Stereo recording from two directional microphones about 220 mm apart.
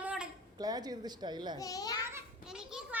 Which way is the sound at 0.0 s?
5° right (ahead or behind).